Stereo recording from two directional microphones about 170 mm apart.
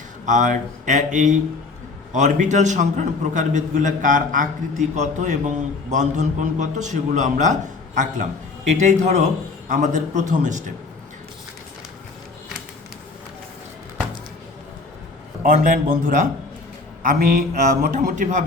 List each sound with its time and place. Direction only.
0.3 s a man's voice: 50° right (ahead or behind)
15.4 s a man's voice: 55° right (ahead or behind)